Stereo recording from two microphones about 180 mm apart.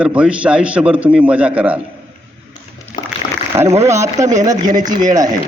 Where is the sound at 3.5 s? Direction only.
15° right (ahead or behind).